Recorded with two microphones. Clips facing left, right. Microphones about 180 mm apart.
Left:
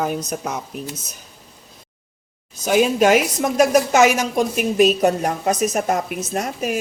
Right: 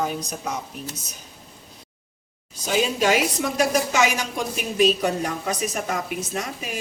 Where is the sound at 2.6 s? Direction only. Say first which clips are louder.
Left 6 dB; 50° left (ahead or behind).